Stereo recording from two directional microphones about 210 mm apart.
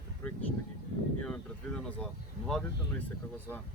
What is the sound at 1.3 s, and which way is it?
Speech, 5° left (ahead or behind).